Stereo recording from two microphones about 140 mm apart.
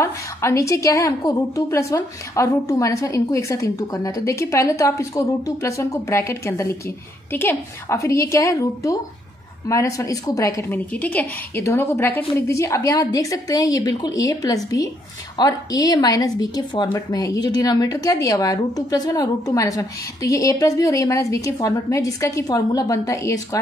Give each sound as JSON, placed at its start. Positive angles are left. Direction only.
{"t": 0.0, "sound": "speech", "side_deg": 20}